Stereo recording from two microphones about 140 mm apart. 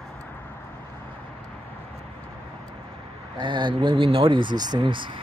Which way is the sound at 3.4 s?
35° right (ahead or behind).